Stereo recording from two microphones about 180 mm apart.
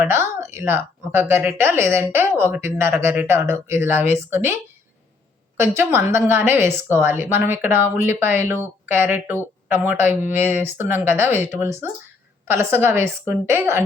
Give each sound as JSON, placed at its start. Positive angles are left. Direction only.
{"t": 0.0, "sound": "a woman's voice", "side_deg": -15}
{"t": 5.5, "sound": "a woman's voice", "side_deg": -15}